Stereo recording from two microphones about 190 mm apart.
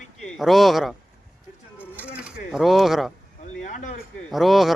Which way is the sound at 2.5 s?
Centre (ahead or behind).